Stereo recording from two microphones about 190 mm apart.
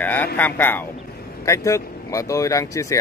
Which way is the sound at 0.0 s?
10° left (ahead or behind).